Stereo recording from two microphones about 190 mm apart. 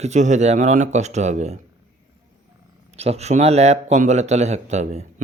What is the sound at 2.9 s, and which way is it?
Speech, 35° right (ahead or behind).